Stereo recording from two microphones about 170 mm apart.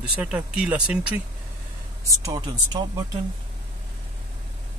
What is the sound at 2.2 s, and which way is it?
Speech, 20° right (ahead or behind).